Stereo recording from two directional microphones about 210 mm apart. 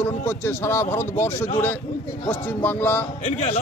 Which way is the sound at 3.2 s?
30° left (ahead or behind).